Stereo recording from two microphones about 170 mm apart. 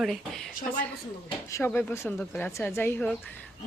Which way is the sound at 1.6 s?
15° left (ahead or behind).